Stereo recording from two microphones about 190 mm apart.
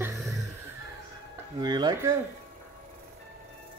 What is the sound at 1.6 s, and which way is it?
Speech, 20° right (ahead or behind).